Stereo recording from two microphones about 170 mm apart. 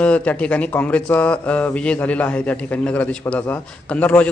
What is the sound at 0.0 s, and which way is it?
Speech, 10° left (ahead or behind).